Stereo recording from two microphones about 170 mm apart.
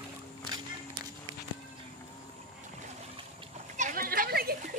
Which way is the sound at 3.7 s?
50° right (ahead or behind).